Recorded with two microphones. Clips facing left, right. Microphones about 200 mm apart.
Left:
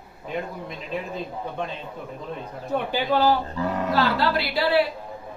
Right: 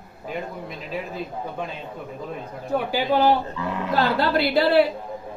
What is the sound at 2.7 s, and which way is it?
Speech, 15° right (ahead or behind).